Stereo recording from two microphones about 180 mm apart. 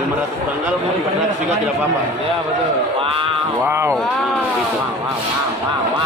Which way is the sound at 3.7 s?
15° right (ahead or behind).